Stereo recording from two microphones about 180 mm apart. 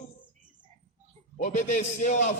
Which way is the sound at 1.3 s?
45° left (ahead or behind).